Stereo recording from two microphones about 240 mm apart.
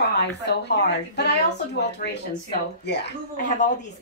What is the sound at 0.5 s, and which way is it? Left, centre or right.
Speech, left.